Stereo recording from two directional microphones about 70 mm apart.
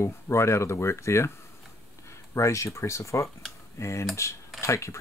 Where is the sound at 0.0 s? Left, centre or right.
Left.